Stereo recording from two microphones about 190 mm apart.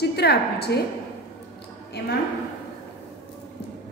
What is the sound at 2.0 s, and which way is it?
Speech, 60° left (ahead or behind).